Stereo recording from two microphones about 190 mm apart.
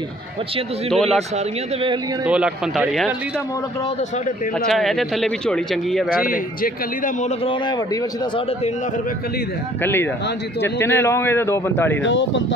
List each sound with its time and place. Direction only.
0.8 s speech: centre (ahead or behind)
2.2 s speech: 5° right (ahead or behind)
4.6 s speech: centre (ahead or behind)
6.0 s speech: 50° left (ahead or behind)
10.6 s a man's voice: 15° left (ahead or behind)
12.0 s speech: 75° left (ahead or behind)